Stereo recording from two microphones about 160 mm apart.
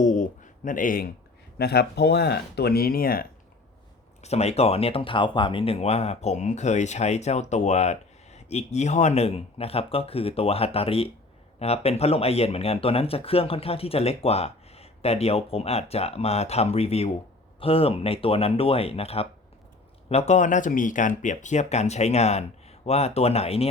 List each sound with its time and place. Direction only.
0.0 s a sound: 50° left (ahead or behind)
1.5 s speech: 90° left; by 3.2 s 65° left (ahead or behind)
4.2 s speech: 40° left (ahead or behind)